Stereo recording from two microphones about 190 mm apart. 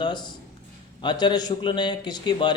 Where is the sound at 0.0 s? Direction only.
25° left (ahead or behind).